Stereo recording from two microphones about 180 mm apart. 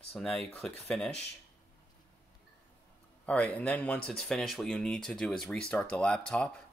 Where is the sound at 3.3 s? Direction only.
5° left (ahead or behind).